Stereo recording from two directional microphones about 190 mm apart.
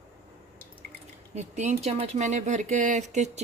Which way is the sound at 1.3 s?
35° right (ahead or behind).